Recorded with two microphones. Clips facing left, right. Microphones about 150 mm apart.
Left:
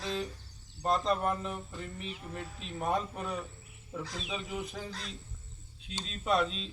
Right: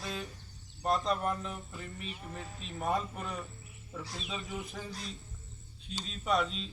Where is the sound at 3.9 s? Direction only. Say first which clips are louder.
Left 3 dB; 15° left (ahead or behind).